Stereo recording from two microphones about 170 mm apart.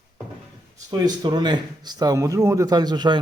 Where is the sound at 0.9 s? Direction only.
25° right (ahead or behind).